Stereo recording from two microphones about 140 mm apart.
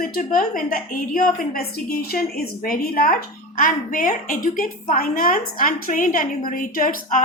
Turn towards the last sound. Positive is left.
turn(degrees=70)  # may be behind; listen again after turning